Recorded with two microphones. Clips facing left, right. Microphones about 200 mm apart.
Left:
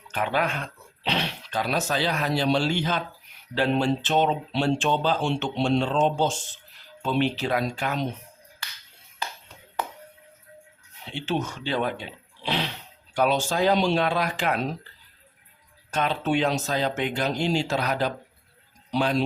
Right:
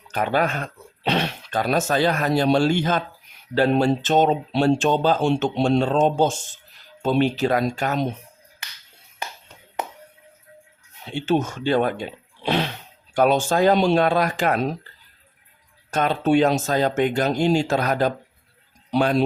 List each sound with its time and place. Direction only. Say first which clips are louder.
0.1 s speech: right 4 dB; 40° right (ahead or behind)
11.0 s speech: right 6 dB; 45° right (ahead or behind)
15.9 s a man's voice: right 6 dB; 45° right (ahead or behind)